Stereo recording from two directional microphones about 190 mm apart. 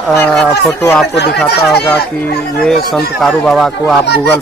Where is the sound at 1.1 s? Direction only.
60° left (ahead or behind).